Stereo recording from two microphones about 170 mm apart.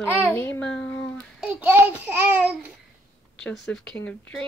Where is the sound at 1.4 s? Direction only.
10° right (ahead or behind).